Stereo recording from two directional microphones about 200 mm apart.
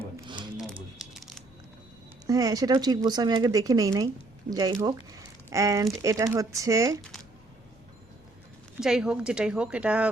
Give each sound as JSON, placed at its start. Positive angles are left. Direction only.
{"t": 0.5, "sound": "a sound", "side_deg": 0}
{"t": 2.2, "sound": "speech", "side_deg": -20}
{"t": 8.8, "sound": "a woman's voice", "side_deg": -5}